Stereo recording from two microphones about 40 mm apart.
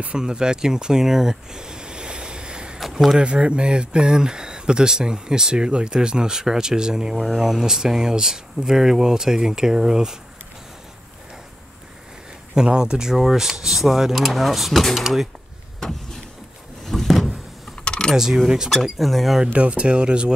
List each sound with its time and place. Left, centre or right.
0.1 s speech: right
2.8 s a sound: centre
3.2 s speech: right
12.5 s speech: right; by 15.0 s centre
16.8 s a sound: centre
17.8 s keys jangling: centre
18.1 s speech: centre
18.8 s speech: centre
19.5 s speech: right